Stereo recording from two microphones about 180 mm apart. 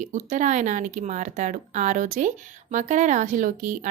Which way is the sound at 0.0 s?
45° right (ahead or behind).